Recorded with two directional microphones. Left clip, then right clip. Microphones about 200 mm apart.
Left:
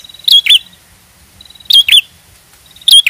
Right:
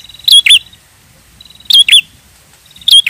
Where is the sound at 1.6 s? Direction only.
15° right (ahead or behind).